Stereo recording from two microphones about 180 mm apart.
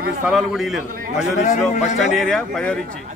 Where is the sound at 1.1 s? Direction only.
40° left (ahead or behind).